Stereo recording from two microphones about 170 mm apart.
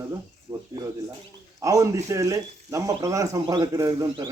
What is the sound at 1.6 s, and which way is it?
A man's voice, 20° right (ahead or behind).